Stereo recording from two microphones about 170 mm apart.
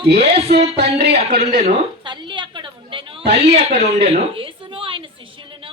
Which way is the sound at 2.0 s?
25° right (ahead or behind).